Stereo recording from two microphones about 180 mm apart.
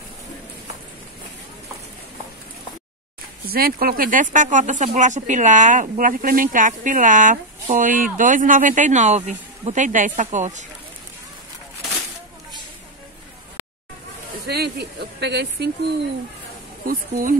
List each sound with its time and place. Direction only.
3.4 s speech: 55° right (ahead or behind)
14.5 s speech: 65° right (ahead or behind)
16.8 s speech: 50° right (ahead or behind)